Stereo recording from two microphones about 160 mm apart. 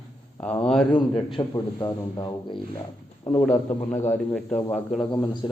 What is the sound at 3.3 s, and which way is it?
Speech, 10° left (ahead or behind).